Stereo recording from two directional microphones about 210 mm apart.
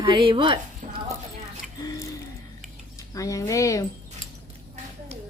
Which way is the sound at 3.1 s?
15° left (ahead or behind).